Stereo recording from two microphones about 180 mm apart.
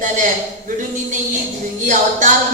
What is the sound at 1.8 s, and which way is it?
Speech, 45° right (ahead or behind).